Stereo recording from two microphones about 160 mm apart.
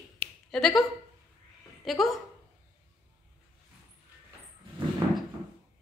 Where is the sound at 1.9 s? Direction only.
Centre (ahead or behind).